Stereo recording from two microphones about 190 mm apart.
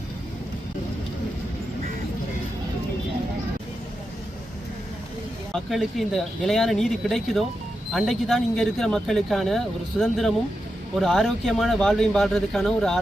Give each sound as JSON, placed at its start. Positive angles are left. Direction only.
{"t": 5.5, "sound": "speech", "side_deg": 0}